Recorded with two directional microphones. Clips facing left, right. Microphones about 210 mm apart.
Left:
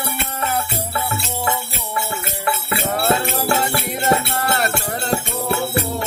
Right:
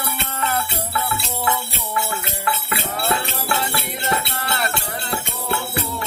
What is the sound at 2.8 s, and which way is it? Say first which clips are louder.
Music: left 7 dB; 45° left (ahead or behind).